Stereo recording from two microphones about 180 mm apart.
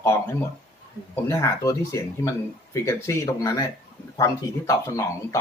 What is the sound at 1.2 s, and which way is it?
Speech, 20° left (ahead or behind).